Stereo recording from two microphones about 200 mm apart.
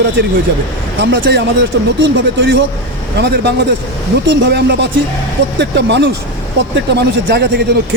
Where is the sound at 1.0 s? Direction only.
55° right (ahead or behind).